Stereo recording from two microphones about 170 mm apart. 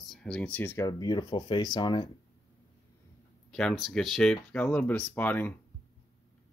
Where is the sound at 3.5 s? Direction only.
Centre (ahead or behind).